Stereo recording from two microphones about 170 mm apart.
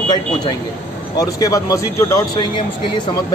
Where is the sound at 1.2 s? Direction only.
20° left (ahead or behind).